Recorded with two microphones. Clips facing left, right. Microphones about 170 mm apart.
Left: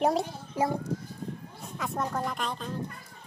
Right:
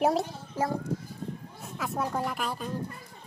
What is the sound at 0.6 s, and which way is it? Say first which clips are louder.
Speech: left 2 dB; 15° left (ahead or behind).